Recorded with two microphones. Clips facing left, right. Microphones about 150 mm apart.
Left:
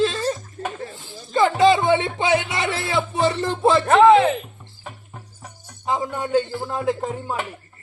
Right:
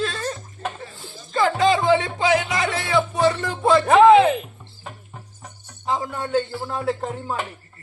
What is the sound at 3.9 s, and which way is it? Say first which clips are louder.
Music: right 1 dB; centre (ahead or behind).